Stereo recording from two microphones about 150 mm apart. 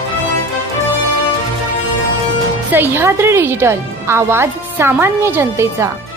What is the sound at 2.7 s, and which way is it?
Speech, 15° right (ahead or behind).